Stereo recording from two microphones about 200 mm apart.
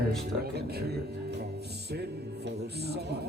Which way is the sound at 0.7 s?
55° right (ahead or behind).